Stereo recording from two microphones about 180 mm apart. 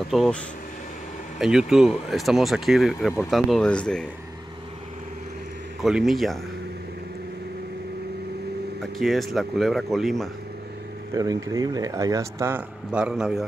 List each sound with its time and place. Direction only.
0.1 s speech: centre (ahead or behind)
1.4 s speech: 5° right (ahead or behind)
5.8 s speech: centre (ahead or behind)
8.9 s speech: centre (ahead or behind)
11.1 s speech: 20° right (ahead or behind); by 13.5 s centre (ahead or behind)